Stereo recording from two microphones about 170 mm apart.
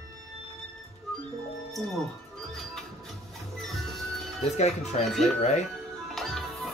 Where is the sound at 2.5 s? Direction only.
Centre (ahead or behind).